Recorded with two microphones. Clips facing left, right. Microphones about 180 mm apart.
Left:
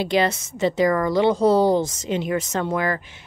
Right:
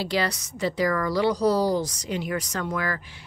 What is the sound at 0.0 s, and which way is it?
A woman's voice, 20° left (ahead or behind).